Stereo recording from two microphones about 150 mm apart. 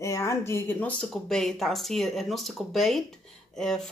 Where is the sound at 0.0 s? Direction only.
20° left (ahead or behind).